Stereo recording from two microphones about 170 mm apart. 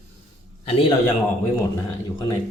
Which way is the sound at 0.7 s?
35° left (ahead or behind).